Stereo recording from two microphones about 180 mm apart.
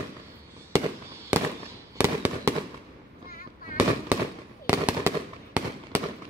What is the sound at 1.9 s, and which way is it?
Fireworks, 10° right (ahead or behind).